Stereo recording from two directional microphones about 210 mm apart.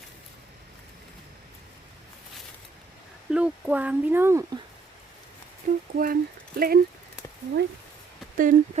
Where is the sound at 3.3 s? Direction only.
5° right (ahead or behind).